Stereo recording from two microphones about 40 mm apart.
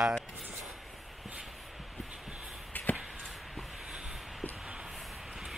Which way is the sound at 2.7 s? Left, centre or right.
Left.